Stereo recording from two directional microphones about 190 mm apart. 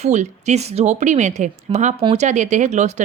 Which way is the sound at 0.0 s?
35° right (ahead or behind).